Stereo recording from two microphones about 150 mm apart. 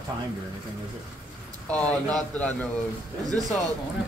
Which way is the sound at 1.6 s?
10° left (ahead or behind).